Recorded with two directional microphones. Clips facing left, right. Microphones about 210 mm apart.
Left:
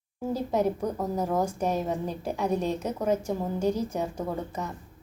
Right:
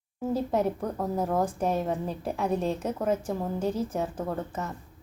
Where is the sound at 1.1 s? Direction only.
5° right (ahead or behind).